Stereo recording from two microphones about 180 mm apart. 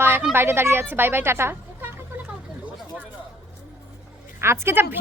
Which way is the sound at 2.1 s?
10° right (ahead or behind).